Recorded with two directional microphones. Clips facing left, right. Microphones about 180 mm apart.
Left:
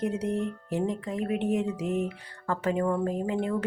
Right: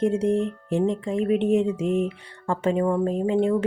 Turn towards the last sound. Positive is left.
turn(degrees=-25)  # may be behind; listen again after turning